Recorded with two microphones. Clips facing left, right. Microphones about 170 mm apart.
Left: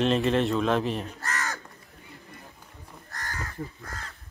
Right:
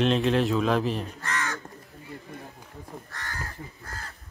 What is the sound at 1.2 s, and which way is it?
Crow, 40° left (ahead or behind).